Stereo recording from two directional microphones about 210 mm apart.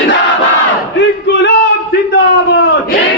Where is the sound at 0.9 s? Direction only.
55° left (ahead or behind).